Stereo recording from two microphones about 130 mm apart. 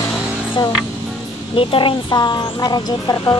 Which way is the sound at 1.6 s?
40° left (ahead or behind).